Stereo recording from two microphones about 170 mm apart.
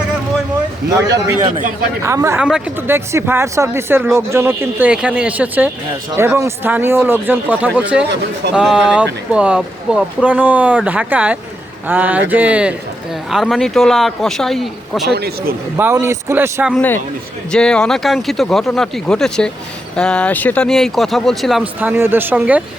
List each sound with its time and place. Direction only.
2.0 s speech: 15° right (ahead or behind); by 15.1 s centre (ahead or behind)
15.1 s speech: 70° right (ahead or behind)
15.8 s speech: 15° right (ahead or behind)
16.7 s speech: 10° left (ahead or behind); by 22.6 s 10° right (ahead or behind)